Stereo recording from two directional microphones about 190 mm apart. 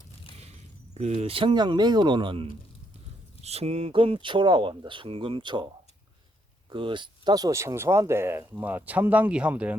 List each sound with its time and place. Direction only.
0.9 s speech: 35° right (ahead or behind)
6.7 s speech: 25° right (ahead or behind); by 9.7 s 5° right (ahead or behind)